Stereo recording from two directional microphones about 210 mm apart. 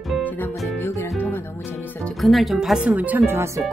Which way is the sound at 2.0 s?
Centre (ahead or behind).